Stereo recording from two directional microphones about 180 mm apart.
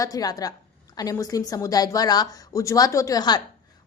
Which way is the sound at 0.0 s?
20° left (ahead or behind).